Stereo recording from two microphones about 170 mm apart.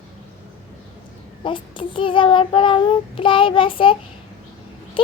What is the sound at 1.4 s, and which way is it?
Child singing, 30° left (ahead or behind).